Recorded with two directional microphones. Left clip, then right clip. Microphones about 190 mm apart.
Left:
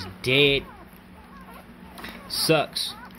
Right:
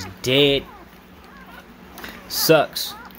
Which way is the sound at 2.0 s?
15° right (ahead or behind).